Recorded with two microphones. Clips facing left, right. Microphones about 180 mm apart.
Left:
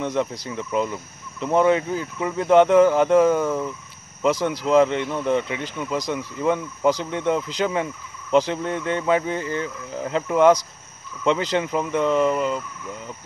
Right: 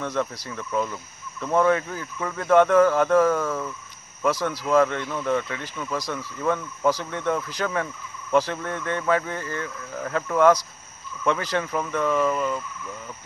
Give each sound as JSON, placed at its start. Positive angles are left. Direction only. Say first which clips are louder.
{"t": 0.0, "sound": "speech", "louder": "left 3 dB", "side_deg": 20}